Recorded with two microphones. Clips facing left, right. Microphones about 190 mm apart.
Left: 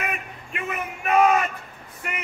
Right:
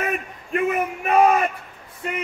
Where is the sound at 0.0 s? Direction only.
40° right (ahead or behind).